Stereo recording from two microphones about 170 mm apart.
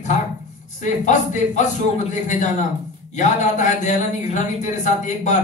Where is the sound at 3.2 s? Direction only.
45° left (ahead or behind).